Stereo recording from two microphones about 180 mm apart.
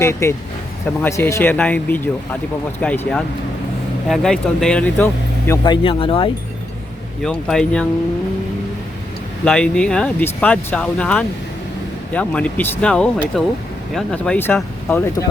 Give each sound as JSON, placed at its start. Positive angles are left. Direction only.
{"t": 0.0, "sound": "speech", "side_deg": 15}
{"t": 5.6, "sound": "speech", "side_deg": 25}
{"t": 7.2, "sound": "speech", "side_deg": 0}
{"t": 9.4, "sound": "speech", "side_deg": 5}